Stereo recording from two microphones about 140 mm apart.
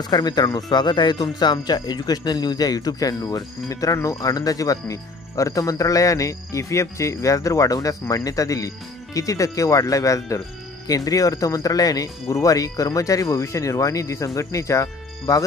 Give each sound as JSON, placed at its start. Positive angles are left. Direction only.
{"t": 0.0, "sound": "speech", "side_deg": 30}